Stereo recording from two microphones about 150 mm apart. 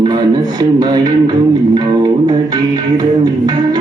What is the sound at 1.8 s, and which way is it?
Music, 25° right (ahead or behind).